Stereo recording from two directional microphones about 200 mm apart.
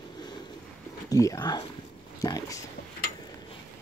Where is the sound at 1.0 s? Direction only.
15° left (ahead or behind).